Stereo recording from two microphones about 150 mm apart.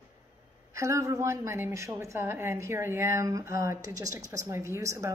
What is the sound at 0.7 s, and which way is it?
A woman's voice, 20° right (ahead or behind).